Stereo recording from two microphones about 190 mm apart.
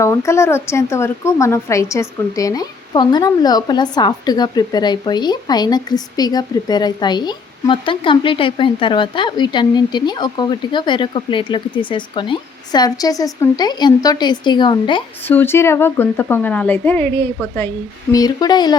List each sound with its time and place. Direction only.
0.0 s speech: 15° left (ahead or behind)
15.3 s speech: 10° left (ahead or behind)